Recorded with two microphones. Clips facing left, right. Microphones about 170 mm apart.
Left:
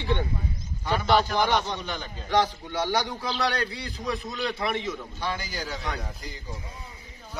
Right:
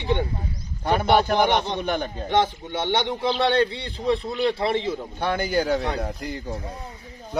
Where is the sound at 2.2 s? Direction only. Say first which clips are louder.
Right 1 dB; 25° right (ahead or behind).